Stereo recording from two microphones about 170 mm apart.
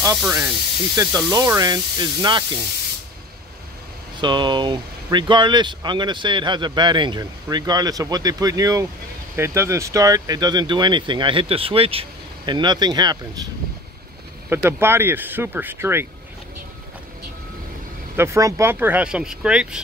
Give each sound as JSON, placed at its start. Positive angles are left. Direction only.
{"t": 0.9, "sound": "speech", "side_deg": -20}
{"t": 4.2, "sound": "speech", "side_deg": -25}
{"t": 14.5, "sound": "speech", "side_deg": -15}
{"t": 18.1, "sound": "speech", "side_deg": -15}